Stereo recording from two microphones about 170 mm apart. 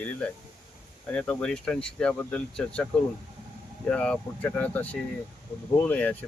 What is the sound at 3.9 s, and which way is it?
Speech, 5° left (ahead or behind).